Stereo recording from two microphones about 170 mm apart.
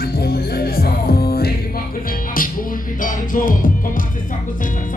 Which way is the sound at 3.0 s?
50° left (ahead or behind).